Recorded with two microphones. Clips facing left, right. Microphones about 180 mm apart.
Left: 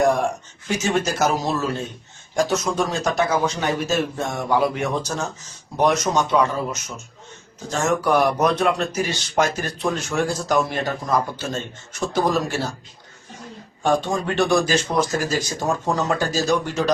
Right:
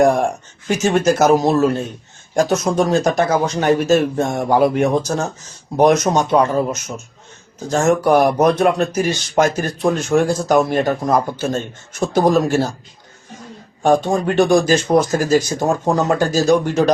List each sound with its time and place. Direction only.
0.9 s speech: 50° right (ahead or behind)
13.8 s speech: 45° right (ahead or behind)